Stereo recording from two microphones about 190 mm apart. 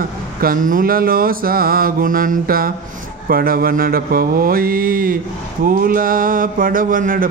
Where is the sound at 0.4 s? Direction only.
45° right (ahead or behind).